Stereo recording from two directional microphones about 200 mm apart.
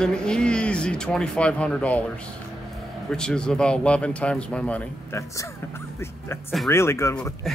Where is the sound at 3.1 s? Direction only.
5° left (ahead or behind).